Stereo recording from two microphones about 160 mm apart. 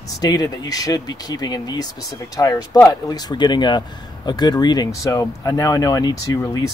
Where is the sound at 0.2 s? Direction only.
25° left (ahead or behind).